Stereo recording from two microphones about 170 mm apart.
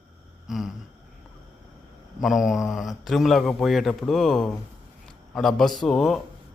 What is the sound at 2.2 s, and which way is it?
Speech, centre (ahead or behind).